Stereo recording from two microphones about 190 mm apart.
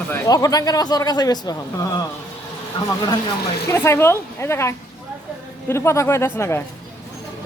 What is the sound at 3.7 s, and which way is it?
A man's voice, 15° left (ahead or behind).